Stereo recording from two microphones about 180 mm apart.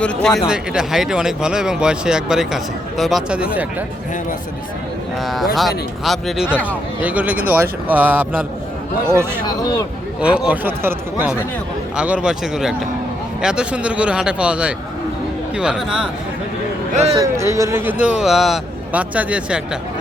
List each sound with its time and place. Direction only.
0.0 s speech: 5° left (ahead or behind)
5.2 s speech: centre (ahead or behind)
9.5 s speech: 20° left (ahead or behind)
10.2 s speech: 5° right (ahead or behind)
16.9 s speech: 35° right (ahead or behind)
17.2 s speech: 15° right (ahead or behind)
18.0 s speech: 5° right (ahead or behind)